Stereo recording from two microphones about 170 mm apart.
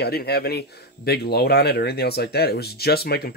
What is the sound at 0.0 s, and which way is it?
Speech, 70° left (ahead or behind).